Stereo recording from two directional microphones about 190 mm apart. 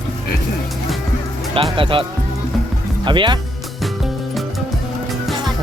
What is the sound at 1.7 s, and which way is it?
Speech, 25° right (ahead or behind).